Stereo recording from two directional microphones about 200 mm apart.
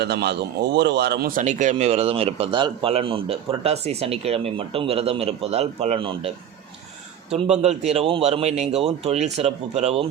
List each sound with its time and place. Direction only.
0.0 s speech: 55° right (ahead or behind)
1.5 s a man's voice: 35° right (ahead or behind)